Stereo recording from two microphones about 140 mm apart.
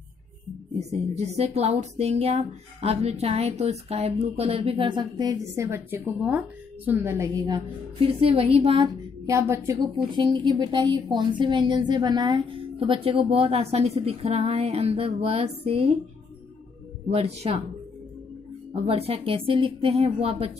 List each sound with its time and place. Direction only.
0.7 s a woman's voice: 50° right (ahead or behind); by 7.6 s 25° right (ahead or behind)
8.0 s a woman's voice: 40° right (ahead or behind)
9.2 s a woman's voice: 25° right (ahead or behind)
10.1 s a woman's voice: 35° right (ahead or behind)
17.1 s a woman's voice: 50° right (ahead or behind)
18.7 s a woman's voice: 45° right (ahead or behind)